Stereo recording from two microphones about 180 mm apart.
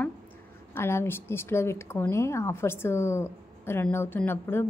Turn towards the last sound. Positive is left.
turn(degrees=15)  # may be behind; listen again after turning